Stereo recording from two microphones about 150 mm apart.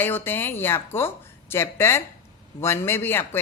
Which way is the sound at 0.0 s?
15° left (ahead or behind).